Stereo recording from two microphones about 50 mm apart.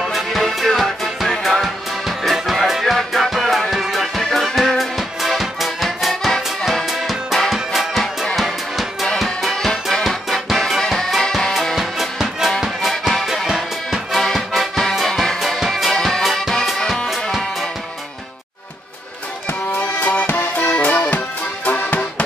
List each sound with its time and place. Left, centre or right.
0.1 s music: centre
11.7 s music: centre
14.9 s music: centre
20.0 s music: left